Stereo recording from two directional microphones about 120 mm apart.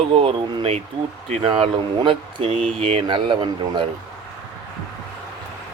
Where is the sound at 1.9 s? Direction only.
45° right (ahead or behind).